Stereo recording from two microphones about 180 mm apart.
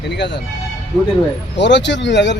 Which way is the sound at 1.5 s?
75° left (ahead or behind).